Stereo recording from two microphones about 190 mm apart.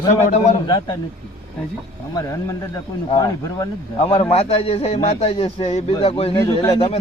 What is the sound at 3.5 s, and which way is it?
Speech, 25° left (ahead or behind).